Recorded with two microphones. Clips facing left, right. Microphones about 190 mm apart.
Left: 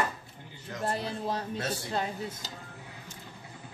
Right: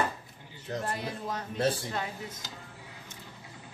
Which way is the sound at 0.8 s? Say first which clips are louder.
Left 7 dB; 30° left (ahead or behind).